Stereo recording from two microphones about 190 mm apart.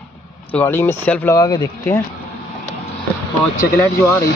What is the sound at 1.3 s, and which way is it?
Speech, 20° left (ahead or behind).